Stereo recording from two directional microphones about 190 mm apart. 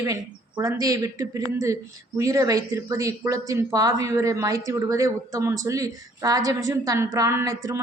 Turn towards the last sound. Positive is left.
turn(degrees=-15)  # may be behind; listen again after turning